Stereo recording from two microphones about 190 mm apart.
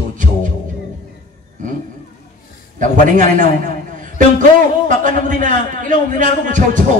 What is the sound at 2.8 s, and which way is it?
A man's voice, 40° right (ahead or behind).